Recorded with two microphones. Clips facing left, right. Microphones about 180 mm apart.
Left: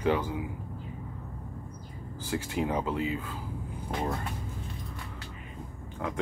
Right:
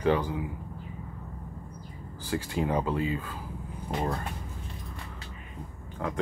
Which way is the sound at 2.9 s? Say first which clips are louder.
Right 1 dB; 20° left (ahead or behind).